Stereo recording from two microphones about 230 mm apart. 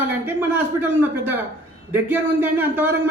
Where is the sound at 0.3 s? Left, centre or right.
Centre.